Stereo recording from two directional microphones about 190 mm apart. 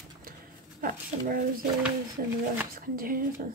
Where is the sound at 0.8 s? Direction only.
50° right (ahead or behind).